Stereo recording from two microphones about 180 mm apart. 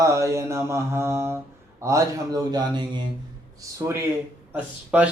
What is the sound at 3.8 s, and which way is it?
Mantra, 15° right (ahead or behind).